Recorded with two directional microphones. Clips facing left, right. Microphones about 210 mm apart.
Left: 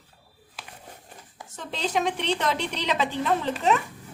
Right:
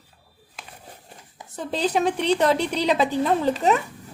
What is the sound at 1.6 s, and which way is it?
A woman's voice, 35° right (ahead or behind).